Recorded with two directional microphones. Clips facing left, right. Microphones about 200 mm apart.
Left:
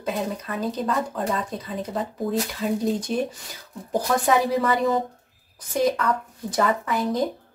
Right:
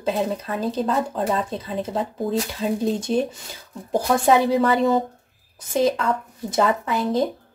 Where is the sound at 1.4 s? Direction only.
25° right (ahead or behind).